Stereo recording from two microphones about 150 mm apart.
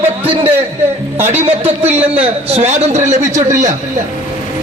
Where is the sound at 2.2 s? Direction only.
45° right (ahead or behind).